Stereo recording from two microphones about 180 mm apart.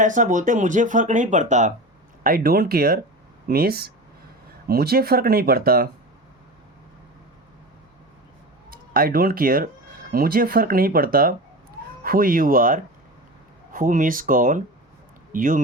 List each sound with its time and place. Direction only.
0.0 s speech: 45° right (ahead or behind)
2.2 s speech: 55° right (ahead or behind)
8.7 s speech: 55° right (ahead or behind)